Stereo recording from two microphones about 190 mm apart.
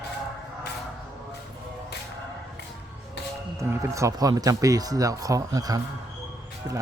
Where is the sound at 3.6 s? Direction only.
15° right (ahead or behind).